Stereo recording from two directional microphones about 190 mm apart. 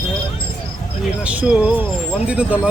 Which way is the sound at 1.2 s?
5° right (ahead or behind).